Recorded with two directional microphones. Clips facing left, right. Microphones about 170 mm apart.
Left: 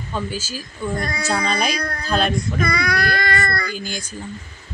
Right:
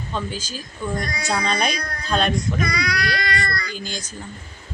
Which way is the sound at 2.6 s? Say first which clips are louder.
Left 3 dB; 55° left (ahead or behind).